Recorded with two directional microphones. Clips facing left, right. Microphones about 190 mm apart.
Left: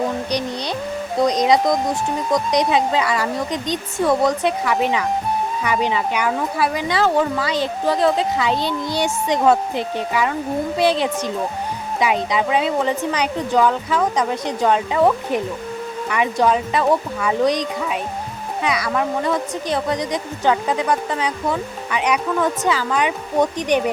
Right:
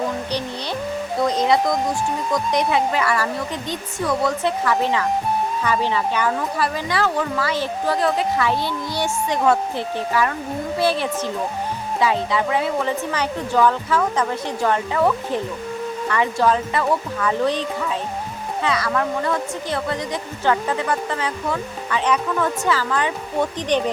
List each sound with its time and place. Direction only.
0.3 s music: 15° left (ahead or behind)
1.2 s speech: 15° left (ahead or behind)